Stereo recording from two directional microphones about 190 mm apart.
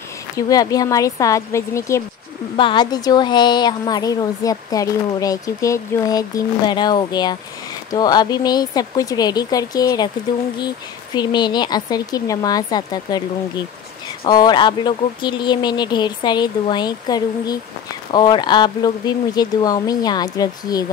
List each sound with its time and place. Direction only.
0.4 s a woman's voice: 20° left (ahead or behind)
11.1 s a woman's voice: 20° left (ahead or behind)